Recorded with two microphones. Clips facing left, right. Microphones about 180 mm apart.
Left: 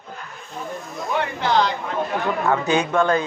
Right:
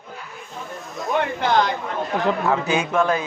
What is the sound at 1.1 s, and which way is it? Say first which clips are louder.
Speech: right 1 dB; 50° right (ahead or behind).